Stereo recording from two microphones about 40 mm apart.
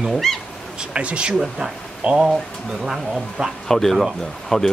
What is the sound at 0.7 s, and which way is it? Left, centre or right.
Speech, right.